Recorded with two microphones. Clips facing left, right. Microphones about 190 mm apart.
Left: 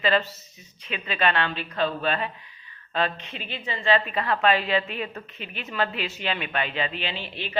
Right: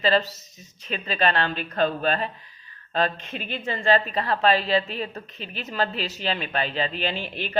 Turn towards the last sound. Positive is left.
turn(degrees=-45)  # may be behind; listen again after turning